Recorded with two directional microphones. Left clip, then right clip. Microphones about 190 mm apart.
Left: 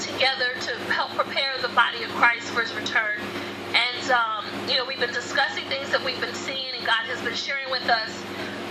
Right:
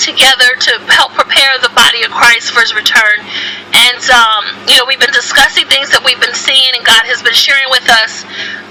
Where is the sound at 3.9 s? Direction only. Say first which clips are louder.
Right 16 dB; 40° right (ahead or behind).